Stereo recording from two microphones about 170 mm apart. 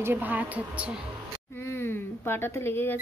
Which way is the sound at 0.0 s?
10° right (ahead or behind).